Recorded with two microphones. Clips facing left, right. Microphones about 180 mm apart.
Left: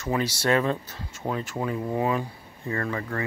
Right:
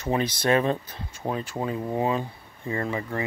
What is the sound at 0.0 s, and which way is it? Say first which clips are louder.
Speech: right 1 dB; 25° right (ahead or behind).